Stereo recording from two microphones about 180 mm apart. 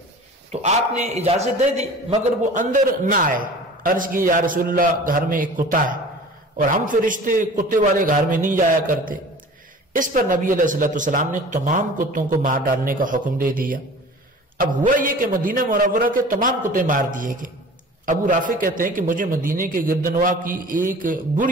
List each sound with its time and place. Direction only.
0.5 s a man's voice: 40° right (ahead or behind)